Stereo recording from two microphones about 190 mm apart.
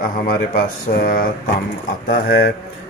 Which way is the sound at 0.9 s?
50° left (ahead or behind).